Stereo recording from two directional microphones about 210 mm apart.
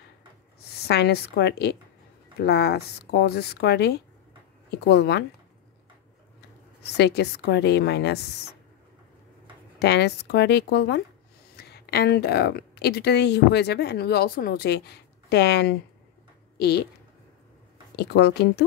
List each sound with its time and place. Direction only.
0.7 s speech: 50° left (ahead or behind)
6.8 s speech: 50° left (ahead or behind)
9.8 s a woman's voice: 50° left (ahead or behind)
17.9 s speech: 50° left (ahead or behind)